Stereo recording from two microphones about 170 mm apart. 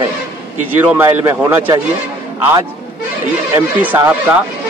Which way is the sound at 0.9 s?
15° right (ahead or behind).